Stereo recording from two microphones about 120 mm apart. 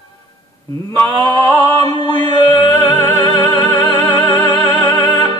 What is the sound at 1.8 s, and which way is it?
Music, 40° left (ahead or behind).